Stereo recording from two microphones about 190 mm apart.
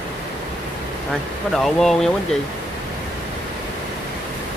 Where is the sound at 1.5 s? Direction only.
Centre (ahead or behind).